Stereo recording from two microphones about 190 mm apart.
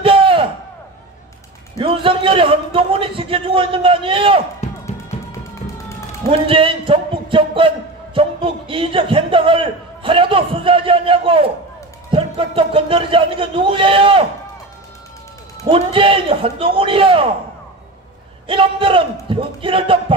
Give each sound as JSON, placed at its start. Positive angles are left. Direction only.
{"t": 0.0, "sound": "a sound", "side_deg": -25}
{"t": 1.8, "sound": "a man's voice", "side_deg": -25}
{"t": 5.1, "sound": "music", "side_deg": 35}
{"t": 6.2, "sound": "a man's voice", "side_deg": -30}
{"t": 15.6, "sound": "a man's voice", "side_deg": -30}
{"t": 18.5, "sound": "a man's voice", "side_deg": -25}